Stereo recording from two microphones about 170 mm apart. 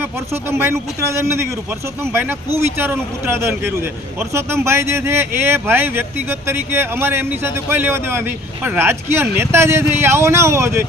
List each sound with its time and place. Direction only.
0.5 s speech: 15° right (ahead or behind)
2.6 s speech: 15° right (ahead or behind)